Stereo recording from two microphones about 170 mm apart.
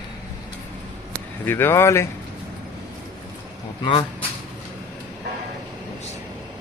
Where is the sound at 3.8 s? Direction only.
30° left (ahead or behind).